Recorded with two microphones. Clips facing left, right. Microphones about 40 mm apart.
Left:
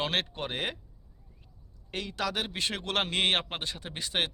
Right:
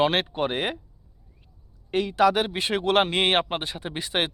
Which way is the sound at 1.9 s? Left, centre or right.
Centre.